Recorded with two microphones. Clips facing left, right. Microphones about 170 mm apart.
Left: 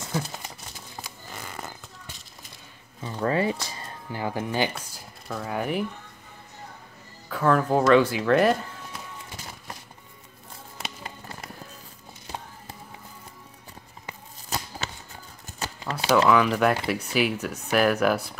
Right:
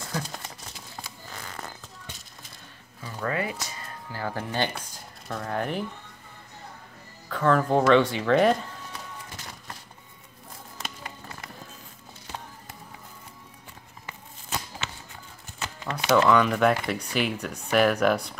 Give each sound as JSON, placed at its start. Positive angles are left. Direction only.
{"t": 0.2, "sound": "a sound", "side_deg": 5}
{"t": 3.0, "sound": "speech", "side_deg": 25}
{"t": 4.1, "sound": "speech", "side_deg": 15}
{"t": 7.2, "sound": "speech", "side_deg": 5}
{"t": 14.8, "sound": "a sound", "side_deg": 40}
{"t": 16.3, "sound": "speech", "side_deg": 5}